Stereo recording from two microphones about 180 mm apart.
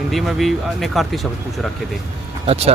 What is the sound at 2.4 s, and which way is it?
Speech, 35° right (ahead or behind).